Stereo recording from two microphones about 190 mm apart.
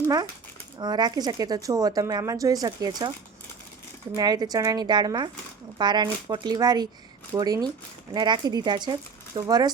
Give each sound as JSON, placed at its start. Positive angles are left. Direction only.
{"t": 0.8, "sound": "speech", "side_deg": -20}
{"t": 4.1, "sound": "speech", "side_deg": -20}